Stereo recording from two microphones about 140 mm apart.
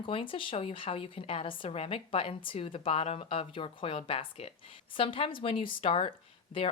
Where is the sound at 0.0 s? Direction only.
40° left (ahead or behind).